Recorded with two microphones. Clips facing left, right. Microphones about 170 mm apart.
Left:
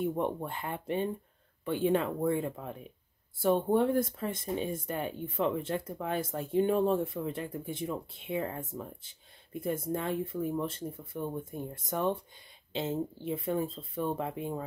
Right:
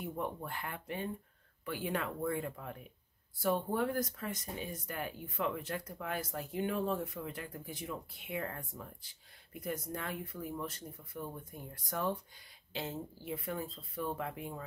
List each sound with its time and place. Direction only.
0.2 s speech: 25° left (ahead or behind)